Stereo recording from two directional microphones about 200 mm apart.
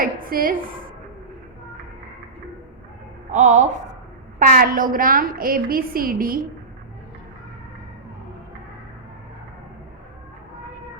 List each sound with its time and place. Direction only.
0.0 s a woman's voice: 45° right (ahead or behind)
3.3 s a woman's voice: 35° right (ahead or behind)